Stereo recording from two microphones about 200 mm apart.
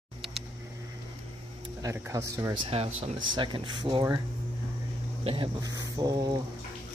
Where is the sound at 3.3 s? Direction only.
25° right (ahead or behind).